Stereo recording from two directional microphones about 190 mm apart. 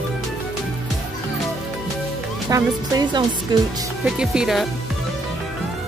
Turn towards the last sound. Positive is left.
turn(degrees=-5)  # may be behind; listen again after turning